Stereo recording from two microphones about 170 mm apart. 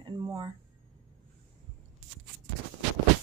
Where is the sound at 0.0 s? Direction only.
25° right (ahead or behind).